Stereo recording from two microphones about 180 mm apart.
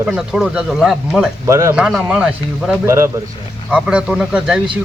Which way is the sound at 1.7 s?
5° right (ahead or behind).